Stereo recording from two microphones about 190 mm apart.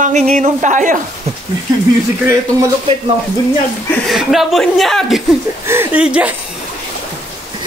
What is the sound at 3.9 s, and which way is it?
Speech, centre (ahead or behind).